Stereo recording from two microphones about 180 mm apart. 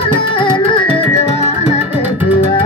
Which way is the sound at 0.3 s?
30° left (ahead or behind).